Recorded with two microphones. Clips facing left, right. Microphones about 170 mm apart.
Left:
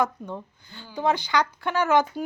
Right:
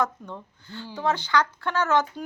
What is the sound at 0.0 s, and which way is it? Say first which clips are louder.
A woman's voice: left 2 dB; 10° left (ahead or behind).